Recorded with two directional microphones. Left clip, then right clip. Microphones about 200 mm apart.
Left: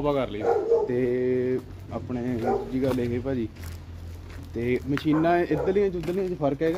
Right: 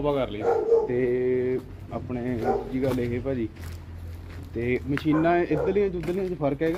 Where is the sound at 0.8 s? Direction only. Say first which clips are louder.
Right 1 dB; 10° left (ahead or behind).